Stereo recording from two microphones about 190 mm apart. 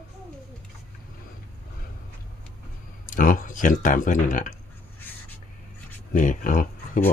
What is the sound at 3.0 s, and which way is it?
Speech, 45° left (ahead or behind).